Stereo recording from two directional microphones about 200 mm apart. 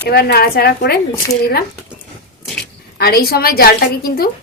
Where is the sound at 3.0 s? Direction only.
50° left (ahead or behind).